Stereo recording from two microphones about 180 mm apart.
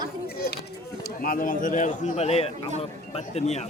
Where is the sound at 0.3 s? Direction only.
60° left (ahead or behind).